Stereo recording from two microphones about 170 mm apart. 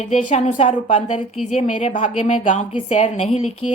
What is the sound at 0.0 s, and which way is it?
Speech, 40° left (ahead or behind).